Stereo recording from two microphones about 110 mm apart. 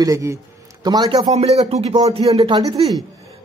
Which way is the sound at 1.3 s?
75° right (ahead or behind).